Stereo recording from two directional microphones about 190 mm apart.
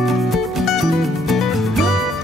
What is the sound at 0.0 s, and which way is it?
Music, centre (ahead or behind).